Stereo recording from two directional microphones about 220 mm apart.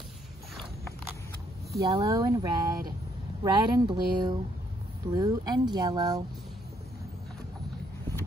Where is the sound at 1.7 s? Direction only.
15° right (ahead or behind).